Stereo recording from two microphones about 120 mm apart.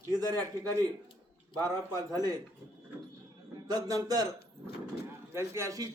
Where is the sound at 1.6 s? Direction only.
30° right (ahead or behind).